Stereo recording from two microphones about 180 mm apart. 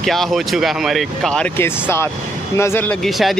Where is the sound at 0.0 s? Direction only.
Centre (ahead or behind).